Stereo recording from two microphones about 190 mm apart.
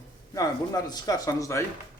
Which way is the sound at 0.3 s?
20° left (ahead or behind).